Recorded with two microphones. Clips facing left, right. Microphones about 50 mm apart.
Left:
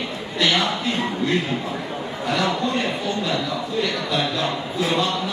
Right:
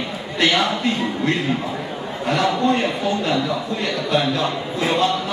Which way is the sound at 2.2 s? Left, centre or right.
Right.